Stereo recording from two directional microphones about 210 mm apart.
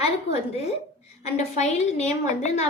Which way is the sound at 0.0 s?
30° left (ahead or behind).